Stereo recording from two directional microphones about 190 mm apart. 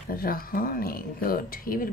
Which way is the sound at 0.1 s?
50° left (ahead or behind).